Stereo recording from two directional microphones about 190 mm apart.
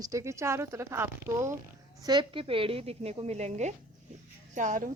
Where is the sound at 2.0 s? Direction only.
25° right (ahead or behind).